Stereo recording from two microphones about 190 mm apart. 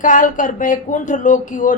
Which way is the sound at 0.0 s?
45° left (ahead or behind).